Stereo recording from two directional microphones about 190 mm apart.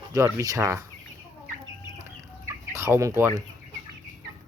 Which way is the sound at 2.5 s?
15° right (ahead or behind).